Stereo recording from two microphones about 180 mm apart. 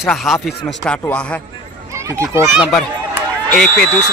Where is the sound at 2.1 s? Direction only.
15° right (ahead or behind).